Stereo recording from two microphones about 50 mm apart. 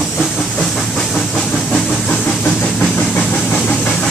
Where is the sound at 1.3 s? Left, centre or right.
Centre.